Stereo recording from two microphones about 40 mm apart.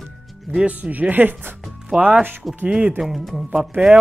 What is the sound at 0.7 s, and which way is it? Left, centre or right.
Speech, right.